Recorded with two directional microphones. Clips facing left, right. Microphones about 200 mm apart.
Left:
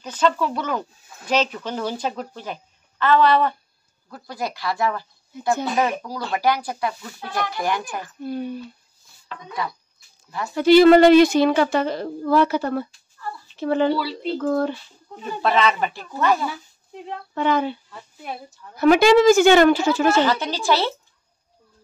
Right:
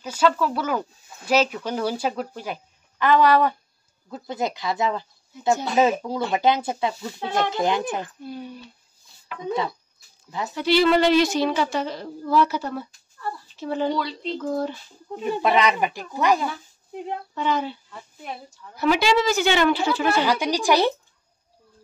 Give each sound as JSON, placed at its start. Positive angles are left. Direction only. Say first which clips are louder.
{"t": 0.0, "sound": "speech", "louder": "even", "side_deg": -10}
{"t": 8.2, "sound": "a woman's voice", "louder": "left 7 dB", "side_deg": 55}
{"t": 10.5, "sound": "a woman's voice", "louder": "left 8 dB", "side_deg": 45}
{"t": 13.9, "sound": "speech", "louder": "left 2 dB", "side_deg": 5}
{"t": 14.4, "sound": "a woman's voice", "louder": "left 5 dB", "side_deg": 60}
{"t": 15.2, "sound": "speech", "louder": "even", "side_deg": -15}
{"t": 17.3, "sound": "a woman's voice", "louder": "left 5 dB", "side_deg": 55}
{"t": 18.8, "sound": "a woman's voice", "louder": "left 7 dB", "side_deg": 50}
{"t": 20.2, "sound": "speech", "louder": "even", "side_deg": -15}